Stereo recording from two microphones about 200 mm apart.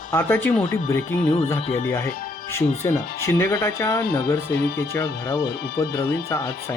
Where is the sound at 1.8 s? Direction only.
10° left (ahead or behind).